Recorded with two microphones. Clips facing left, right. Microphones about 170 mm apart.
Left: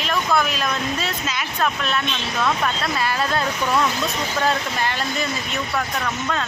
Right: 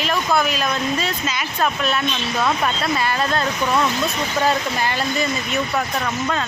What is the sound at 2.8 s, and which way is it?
Speech, centre (ahead or behind).